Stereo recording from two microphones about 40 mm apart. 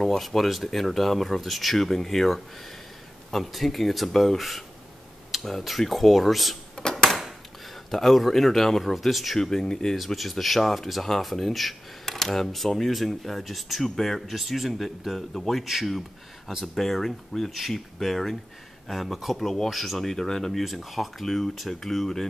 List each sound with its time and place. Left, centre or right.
0.0 s speech: centre
6.7 s a sound: centre
7.1 s a sound: centre
7.9 s speech: centre
9.4 s speech: centre
9.9 s speech: centre
16.6 s speech: centre
20.6 s speech: centre